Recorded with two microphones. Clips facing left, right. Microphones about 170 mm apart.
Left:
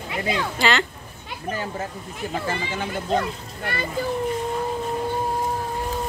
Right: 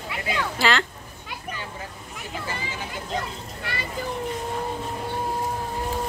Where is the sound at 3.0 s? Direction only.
55° left (ahead or behind).